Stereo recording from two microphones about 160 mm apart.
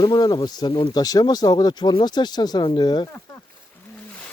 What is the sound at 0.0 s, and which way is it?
Speech, 25° left (ahead or behind).